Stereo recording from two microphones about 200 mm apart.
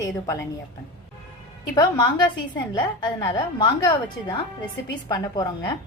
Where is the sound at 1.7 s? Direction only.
20° left (ahead or behind).